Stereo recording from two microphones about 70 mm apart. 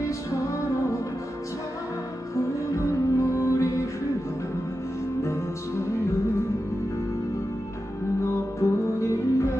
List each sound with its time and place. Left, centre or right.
2.3 s music: left
5.2 s music: left
8.2 s music: left